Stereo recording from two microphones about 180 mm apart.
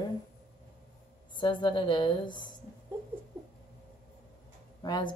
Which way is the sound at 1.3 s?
25° left (ahead or behind).